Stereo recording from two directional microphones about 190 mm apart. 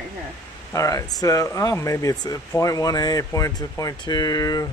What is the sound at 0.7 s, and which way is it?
Speech, 15° left (ahead or behind).